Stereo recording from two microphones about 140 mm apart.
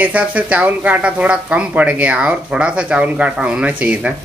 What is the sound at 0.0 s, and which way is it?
Speech, 10° right (ahead or behind).